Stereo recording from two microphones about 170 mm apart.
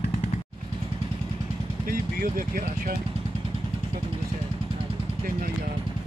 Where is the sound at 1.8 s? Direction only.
55° right (ahead or behind).